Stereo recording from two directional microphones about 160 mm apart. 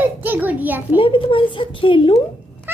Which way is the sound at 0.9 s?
30° left (ahead or behind).